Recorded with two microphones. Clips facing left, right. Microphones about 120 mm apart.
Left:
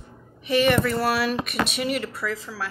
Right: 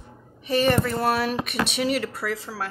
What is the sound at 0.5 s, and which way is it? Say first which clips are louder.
Speech: left 1 dB; 35° right (ahead or behind).